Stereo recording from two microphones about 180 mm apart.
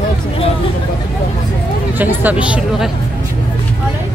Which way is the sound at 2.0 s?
10° right (ahead or behind).